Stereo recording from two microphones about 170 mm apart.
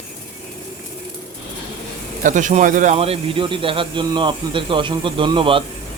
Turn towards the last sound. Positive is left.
turn(degrees=-30)  # may be behind; listen again after turning